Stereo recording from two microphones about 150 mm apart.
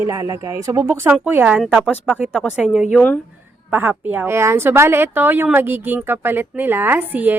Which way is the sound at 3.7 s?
10° right (ahead or behind).